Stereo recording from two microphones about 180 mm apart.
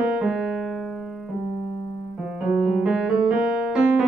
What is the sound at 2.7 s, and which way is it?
Piano, 5° right (ahead or behind).